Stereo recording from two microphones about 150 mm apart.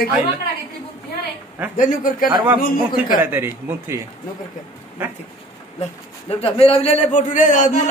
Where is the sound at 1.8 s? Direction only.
65° left (ahead or behind).